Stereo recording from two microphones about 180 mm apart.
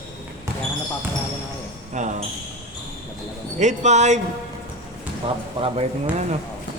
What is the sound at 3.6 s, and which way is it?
Speech, 40° right (ahead or behind).